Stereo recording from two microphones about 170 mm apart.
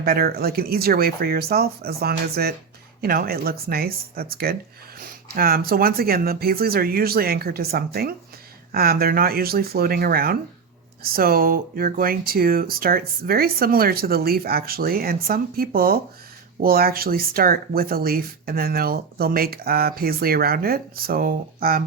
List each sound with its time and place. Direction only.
0.0 s speech: 65° right (ahead or behind)